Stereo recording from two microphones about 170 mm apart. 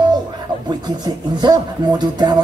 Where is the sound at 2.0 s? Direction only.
25° right (ahead or behind).